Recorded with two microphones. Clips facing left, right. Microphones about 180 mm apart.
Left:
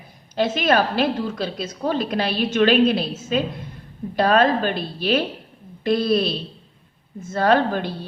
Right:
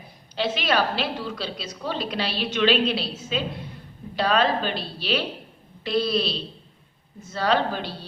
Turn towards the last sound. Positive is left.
turn(degrees=50)  # may be behind; listen again after turning